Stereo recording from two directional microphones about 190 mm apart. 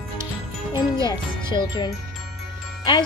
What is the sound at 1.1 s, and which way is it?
Music, 25° left (ahead or behind).